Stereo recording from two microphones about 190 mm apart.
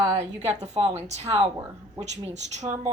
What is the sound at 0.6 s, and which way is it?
Speech, 35° right (ahead or behind).